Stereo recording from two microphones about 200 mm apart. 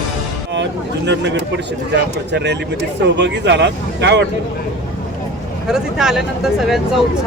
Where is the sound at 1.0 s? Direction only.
60° right (ahead or behind).